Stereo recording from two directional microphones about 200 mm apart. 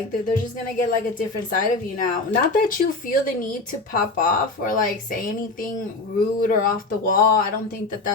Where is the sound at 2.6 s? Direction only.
45° left (ahead or behind).